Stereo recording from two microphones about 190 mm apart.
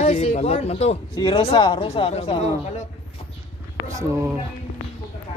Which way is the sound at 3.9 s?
15° right (ahead or behind).